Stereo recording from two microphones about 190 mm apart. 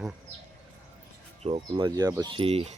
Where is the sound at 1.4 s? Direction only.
30° right (ahead or behind).